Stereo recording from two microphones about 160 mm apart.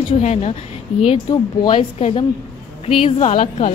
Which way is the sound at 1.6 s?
35° left (ahead or behind).